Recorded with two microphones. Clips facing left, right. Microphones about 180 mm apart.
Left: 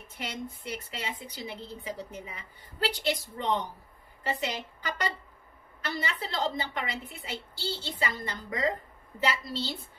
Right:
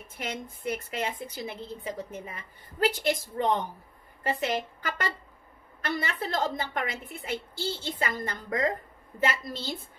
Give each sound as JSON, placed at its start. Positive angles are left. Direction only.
{"t": 0.3, "sound": "a woman's voice", "side_deg": -50}